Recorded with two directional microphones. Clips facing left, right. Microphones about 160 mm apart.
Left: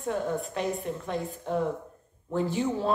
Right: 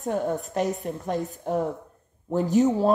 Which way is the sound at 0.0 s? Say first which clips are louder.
Right 3 dB; 40° right (ahead or behind).